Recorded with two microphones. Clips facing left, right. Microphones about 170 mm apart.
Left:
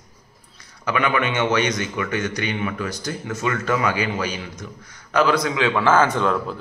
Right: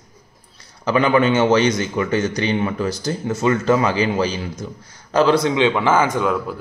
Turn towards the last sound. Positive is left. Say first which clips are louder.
# right 1 dB
turn(degrees=-10)  # may be behind; listen again after turning